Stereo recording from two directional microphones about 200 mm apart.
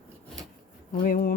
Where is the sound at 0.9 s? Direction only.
45° left (ahead or behind).